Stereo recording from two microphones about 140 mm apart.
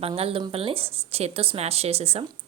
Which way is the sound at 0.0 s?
45° right (ahead or behind).